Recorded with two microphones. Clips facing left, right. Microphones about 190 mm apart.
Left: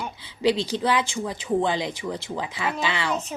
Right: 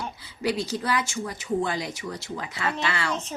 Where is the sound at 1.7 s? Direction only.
25° left (ahead or behind).